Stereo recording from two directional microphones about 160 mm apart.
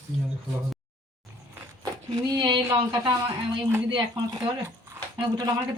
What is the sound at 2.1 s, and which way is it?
Speech, 25° right (ahead or behind).